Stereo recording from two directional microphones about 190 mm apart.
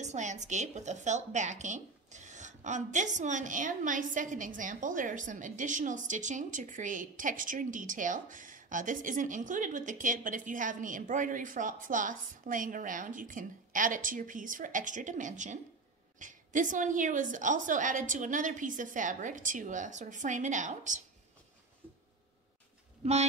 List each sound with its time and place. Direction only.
0.0 s speech: 40° right (ahead or behind)